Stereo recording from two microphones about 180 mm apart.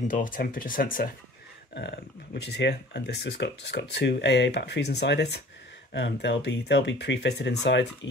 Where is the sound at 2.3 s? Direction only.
70° left (ahead or behind).